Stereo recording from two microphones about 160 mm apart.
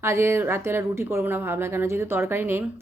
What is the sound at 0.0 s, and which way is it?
A woman's voice, 15° right (ahead or behind).